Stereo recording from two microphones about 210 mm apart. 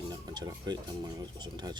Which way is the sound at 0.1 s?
20° right (ahead or behind).